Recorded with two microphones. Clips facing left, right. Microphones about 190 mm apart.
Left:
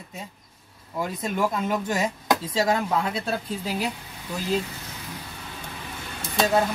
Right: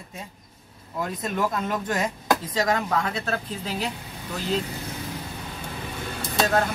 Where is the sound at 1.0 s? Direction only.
5° left (ahead or behind).